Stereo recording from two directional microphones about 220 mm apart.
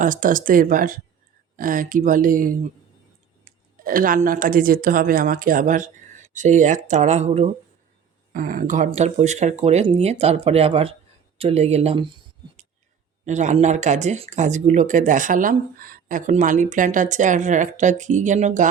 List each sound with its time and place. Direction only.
0.0 s speech: 35° right (ahead or behind)
8.3 s speech: 40° right (ahead or behind)
13.2 s speech: 35° right (ahead or behind)